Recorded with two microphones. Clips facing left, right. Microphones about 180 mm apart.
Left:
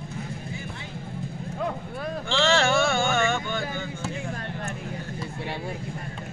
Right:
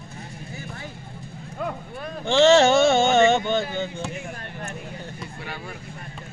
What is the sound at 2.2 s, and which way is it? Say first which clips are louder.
Speech: right 8 dB; 20° right (ahead or behind).